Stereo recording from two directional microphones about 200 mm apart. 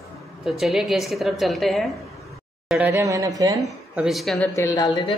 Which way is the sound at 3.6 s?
Centre (ahead or behind).